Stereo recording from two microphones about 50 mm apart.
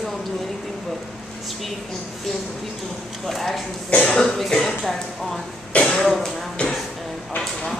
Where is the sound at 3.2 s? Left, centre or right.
Centre.